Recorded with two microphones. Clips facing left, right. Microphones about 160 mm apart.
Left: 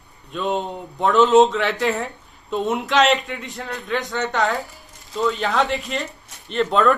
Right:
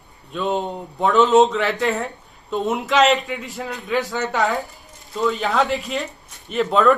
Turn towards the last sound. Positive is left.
turn(degrees=0)  # may be behind; listen again after turning